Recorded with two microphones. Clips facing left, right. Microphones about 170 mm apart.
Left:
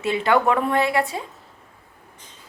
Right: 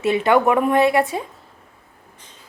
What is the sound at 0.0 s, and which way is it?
A woman's voice, 20° right (ahead or behind).